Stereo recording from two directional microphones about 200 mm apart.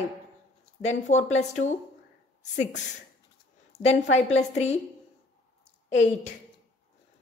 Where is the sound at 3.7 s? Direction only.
30° left (ahead or behind).